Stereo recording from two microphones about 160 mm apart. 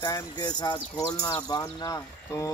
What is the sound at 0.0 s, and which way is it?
Speech, 20° left (ahead or behind).